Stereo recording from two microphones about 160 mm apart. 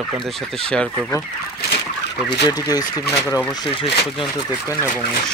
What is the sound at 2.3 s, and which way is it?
Speech, 25° left (ahead or behind).